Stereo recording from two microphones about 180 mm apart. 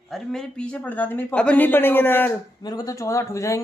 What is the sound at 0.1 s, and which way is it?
A man's voice, centre (ahead or behind).